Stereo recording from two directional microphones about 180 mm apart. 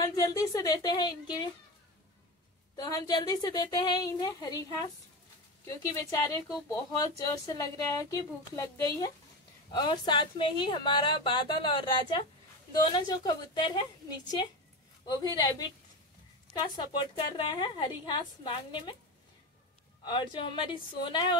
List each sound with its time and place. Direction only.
0.0 s speech: 20° left (ahead or behind)
2.7 s speech: 20° left (ahead or behind)
16.5 s speech: 25° left (ahead or behind)
20.1 s speech: 25° left (ahead or behind)